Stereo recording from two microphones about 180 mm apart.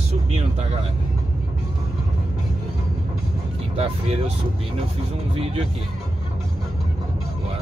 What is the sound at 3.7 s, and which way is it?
Vehicle, 35° right (ahead or behind).